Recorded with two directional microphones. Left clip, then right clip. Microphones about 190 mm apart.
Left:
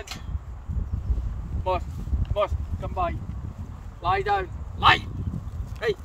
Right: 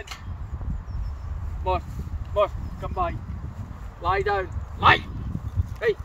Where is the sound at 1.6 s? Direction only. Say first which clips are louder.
Even; 70° left (ahead or behind).